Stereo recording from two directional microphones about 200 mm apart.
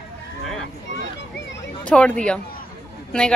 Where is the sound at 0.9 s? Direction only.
60° left (ahead or behind).